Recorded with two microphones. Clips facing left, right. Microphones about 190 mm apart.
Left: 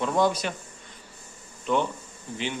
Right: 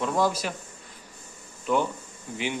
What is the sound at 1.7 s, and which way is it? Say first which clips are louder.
Speech: even; 5° right (ahead or behind).